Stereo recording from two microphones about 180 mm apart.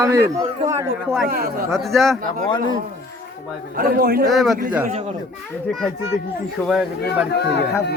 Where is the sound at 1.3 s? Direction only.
60° right (ahead or behind).